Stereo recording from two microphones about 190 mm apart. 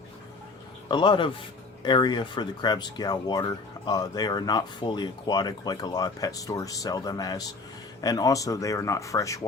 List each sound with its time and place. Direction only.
0.9 s speech: 25° left (ahead or behind)